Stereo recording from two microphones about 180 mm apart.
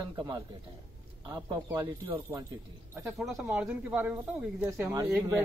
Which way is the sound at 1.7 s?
25° right (ahead or behind).